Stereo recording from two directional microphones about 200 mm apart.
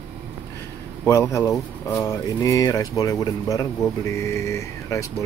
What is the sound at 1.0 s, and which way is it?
Speech, 15° left (ahead or behind).